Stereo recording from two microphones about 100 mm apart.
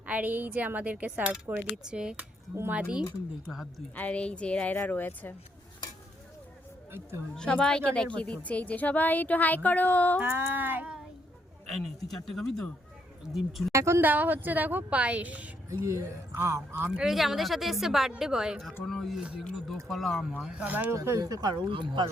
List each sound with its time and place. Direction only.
0.0 s speech: 15° right (ahead or behind)
3.9 s a woman's voice: 15° left (ahead or behind)
7.3 s a woman's voice: 10° left (ahead or behind)
10.2 s a sound: 20° right (ahead or behind)
11.7 s speech: centre (ahead or behind)
13.7 s a sound: 30° right (ahead or behind)
14.1 s speech: 15° right (ahead or behind)
15.8 s a sound: 30° right (ahead or behind)
17.0 s speech: 5° right (ahead or behind)
20.4 s speech: 10° right (ahead or behind)
20.9 s speech: 30° right (ahead or behind); by 22.0 s 55° right (ahead or behind)